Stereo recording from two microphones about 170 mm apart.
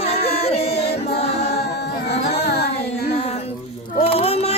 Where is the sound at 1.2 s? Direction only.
40° left (ahead or behind).